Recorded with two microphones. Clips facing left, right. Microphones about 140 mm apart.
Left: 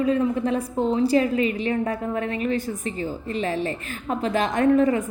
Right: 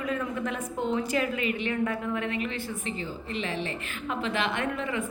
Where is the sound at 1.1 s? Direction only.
35° left (ahead or behind).